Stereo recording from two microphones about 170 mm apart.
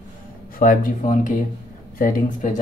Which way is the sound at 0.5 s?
55° left (ahead or behind).